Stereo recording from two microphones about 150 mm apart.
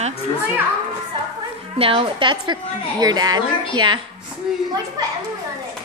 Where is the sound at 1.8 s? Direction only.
35° right (ahead or behind).